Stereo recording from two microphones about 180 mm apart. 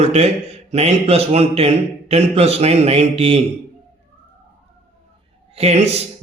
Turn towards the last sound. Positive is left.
turn(degrees=-35)  # may be behind; listen again after turning